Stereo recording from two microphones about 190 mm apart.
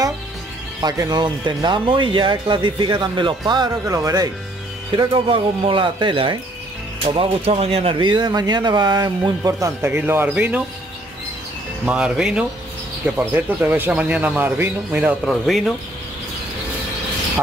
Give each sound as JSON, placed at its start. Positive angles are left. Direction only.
{"t": 0.7, "sound": "speech", "side_deg": -20}
{"t": 11.8, "sound": "speech", "side_deg": -5}